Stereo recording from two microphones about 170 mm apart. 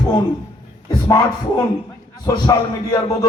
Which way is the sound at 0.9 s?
20° left (ahead or behind).